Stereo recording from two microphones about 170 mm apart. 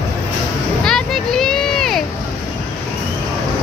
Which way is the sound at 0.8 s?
5° left (ahead or behind).